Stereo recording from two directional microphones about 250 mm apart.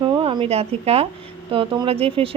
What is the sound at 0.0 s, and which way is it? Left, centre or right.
Speech, centre.